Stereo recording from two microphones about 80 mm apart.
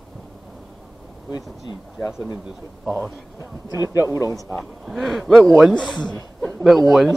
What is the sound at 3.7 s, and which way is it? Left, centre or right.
Speech, right.